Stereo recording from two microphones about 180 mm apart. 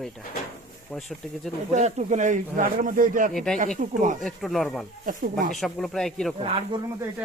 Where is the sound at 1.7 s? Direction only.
40° right (ahead or behind).